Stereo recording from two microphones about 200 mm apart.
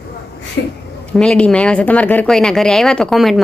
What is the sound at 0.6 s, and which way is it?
Speech, 60° left (ahead or behind).